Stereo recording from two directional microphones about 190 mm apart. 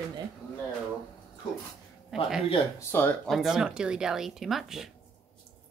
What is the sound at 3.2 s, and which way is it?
Speech, centre (ahead or behind).